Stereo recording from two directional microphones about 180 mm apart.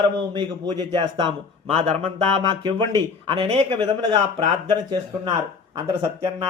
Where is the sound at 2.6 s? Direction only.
25° right (ahead or behind).